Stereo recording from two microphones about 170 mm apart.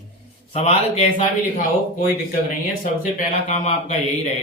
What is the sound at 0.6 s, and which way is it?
Speech, 40° left (ahead or behind).